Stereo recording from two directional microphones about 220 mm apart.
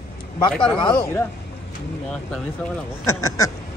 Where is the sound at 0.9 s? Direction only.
15° left (ahead or behind).